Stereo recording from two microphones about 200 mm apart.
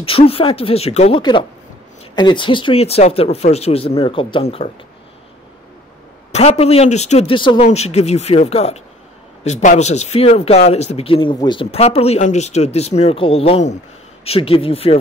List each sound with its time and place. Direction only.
0.0 s speech: 30° left (ahead or behind)
6.3 s speech: 30° left (ahead or behind)